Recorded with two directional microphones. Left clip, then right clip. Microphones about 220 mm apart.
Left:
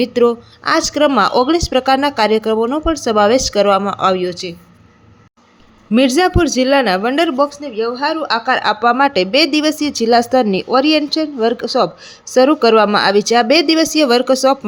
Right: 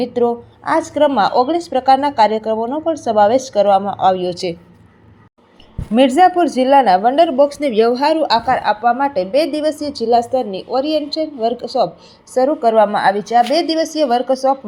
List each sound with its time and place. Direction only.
0.1 s speech: 30° left (ahead or behind)
0.9 s speech: 45° left (ahead or behind)
4.4 s a woman's voice: 10° right (ahead or behind)
5.9 s speech: 30° left (ahead or behind)
6.9 s speech: 40° left (ahead or behind)
7.5 s speech: 20° right (ahead or behind)
7.9 s a woman's voice: centre (ahead or behind)
8.4 s speech: 35° left (ahead or behind)
10.5 s speech: 65° left (ahead or behind)
12.4 s speech: 45° left (ahead or behind)